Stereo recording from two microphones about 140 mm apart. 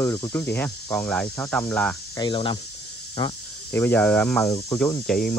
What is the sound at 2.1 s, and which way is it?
Speech, 35° left (ahead or behind).